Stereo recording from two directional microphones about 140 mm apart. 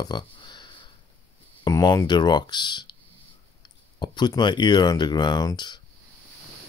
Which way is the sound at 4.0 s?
30° left (ahead or behind).